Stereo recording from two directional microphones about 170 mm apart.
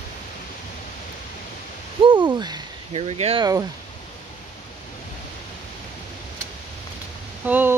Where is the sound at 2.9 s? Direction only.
35° right (ahead or behind).